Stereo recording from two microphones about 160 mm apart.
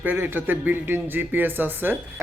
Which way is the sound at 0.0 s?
10° right (ahead or behind).